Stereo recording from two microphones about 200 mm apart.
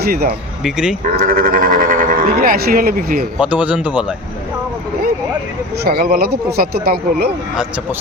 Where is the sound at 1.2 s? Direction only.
45° right (ahead or behind).